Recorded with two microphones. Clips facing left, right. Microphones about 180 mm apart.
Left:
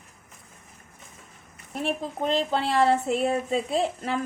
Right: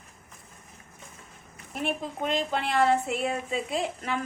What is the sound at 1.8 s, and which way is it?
A woman's voice, 35° left (ahead or behind).